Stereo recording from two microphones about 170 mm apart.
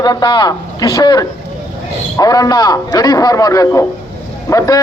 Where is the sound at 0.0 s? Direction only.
25° left (ahead or behind).